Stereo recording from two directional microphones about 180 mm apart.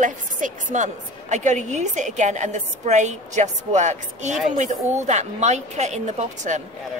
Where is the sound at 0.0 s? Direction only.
45° right (ahead or behind).